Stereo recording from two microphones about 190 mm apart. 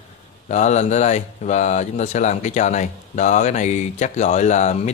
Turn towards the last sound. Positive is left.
turn(degrees=35)  # may be behind; listen again after turning